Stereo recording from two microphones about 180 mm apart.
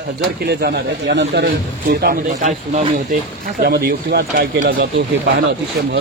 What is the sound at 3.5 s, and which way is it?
Speech, 60° right (ahead or behind).